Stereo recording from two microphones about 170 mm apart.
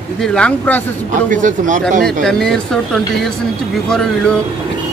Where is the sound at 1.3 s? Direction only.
50° right (ahead or behind).